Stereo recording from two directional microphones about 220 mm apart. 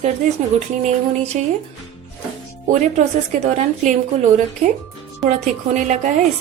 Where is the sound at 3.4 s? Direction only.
30° right (ahead or behind).